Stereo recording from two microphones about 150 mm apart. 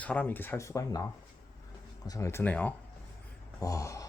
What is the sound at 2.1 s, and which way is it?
Speech, 20° left (ahead or behind).